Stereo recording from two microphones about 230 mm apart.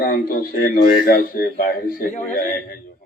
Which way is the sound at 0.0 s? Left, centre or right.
Left.